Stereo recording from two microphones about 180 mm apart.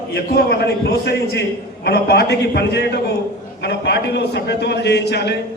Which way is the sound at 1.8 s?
65° left (ahead or behind).